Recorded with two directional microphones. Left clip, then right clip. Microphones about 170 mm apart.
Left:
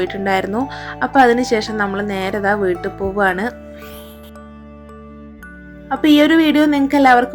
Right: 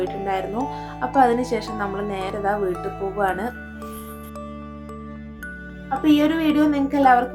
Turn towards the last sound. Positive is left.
turn(degrees=45)  # may be behind; listen again after turning